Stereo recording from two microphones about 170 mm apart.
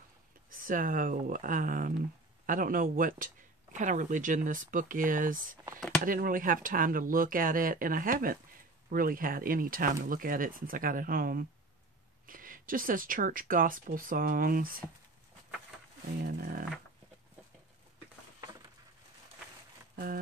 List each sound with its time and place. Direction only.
0.5 s speech: 55° right (ahead or behind)
16.2 s speech: 60° right (ahead or behind)